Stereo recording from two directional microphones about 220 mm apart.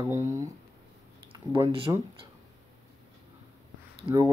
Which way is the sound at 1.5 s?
15° right (ahead or behind).